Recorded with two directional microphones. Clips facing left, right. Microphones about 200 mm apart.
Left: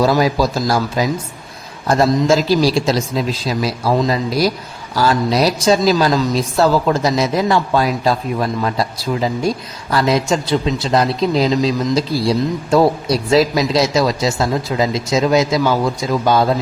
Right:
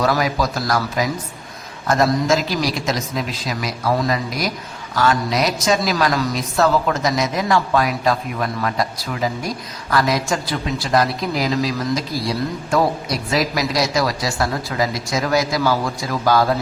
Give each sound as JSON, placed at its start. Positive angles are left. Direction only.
{"t": 0.0, "sound": "speech", "side_deg": 30}